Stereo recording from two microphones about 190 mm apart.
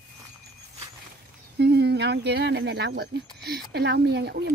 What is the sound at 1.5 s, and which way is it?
Speech, 60° right (ahead or behind).